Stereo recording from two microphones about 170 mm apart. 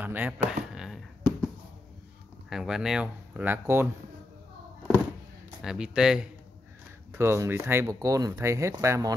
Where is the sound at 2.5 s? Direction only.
Centre (ahead or behind).